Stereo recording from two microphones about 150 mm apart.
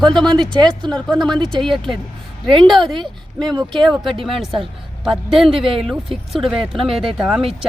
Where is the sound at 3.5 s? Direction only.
30° right (ahead or behind).